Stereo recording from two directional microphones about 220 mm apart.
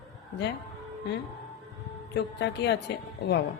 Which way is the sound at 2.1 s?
50° left (ahead or behind).